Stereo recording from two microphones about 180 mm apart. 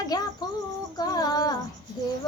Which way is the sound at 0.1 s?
20° left (ahead or behind).